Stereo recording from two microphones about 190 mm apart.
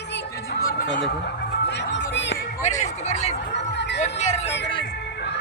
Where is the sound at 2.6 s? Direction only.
40° left (ahead or behind).